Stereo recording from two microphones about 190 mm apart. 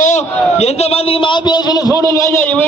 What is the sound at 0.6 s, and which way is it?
A man's voice, 35° left (ahead or behind).